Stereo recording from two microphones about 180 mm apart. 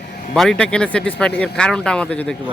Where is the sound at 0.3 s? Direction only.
5° left (ahead or behind).